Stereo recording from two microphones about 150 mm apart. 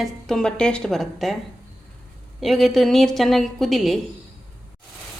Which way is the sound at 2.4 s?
Centre (ahead or behind).